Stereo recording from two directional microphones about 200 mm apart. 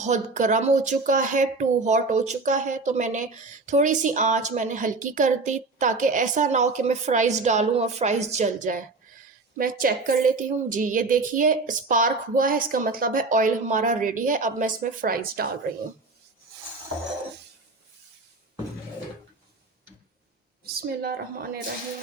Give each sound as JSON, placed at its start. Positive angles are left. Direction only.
{"t": 0.0, "sound": "speech", "side_deg": -35}
{"t": 9.6, "sound": "speech", "side_deg": -45}
{"t": 20.8, "sound": "speech", "side_deg": -50}